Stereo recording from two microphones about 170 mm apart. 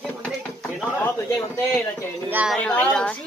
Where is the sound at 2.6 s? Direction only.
10° left (ahead or behind).